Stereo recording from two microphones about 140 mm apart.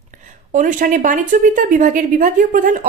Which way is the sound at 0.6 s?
70° right (ahead or behind).